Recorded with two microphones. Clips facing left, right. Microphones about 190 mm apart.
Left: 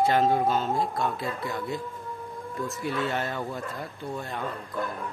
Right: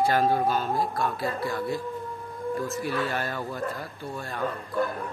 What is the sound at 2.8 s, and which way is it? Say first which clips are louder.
Speech: even; 25° left (ahead or behind).